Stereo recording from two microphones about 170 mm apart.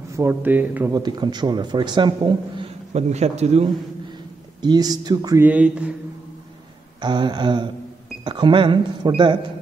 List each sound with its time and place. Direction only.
0.1 s speech: 15° right (ahead or behind)
0.9 s a man's voice: 25° right (ahead or behind); by 3.6 s 40° right (ahead or behind)
4.6 s a man's voice: 25° right (ahead or behind)
5.4 s speech: 10° right (ahead or behind)
7.0 s a man's voice: 25° right (ahead or behind)